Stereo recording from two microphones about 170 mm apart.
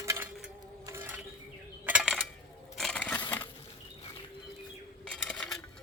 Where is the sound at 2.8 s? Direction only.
5° left (ahead or behind).